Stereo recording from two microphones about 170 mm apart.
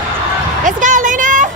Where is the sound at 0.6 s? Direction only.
50° right (ahead or behind).